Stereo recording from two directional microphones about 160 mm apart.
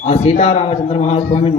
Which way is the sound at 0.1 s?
45° left (ahead or behind).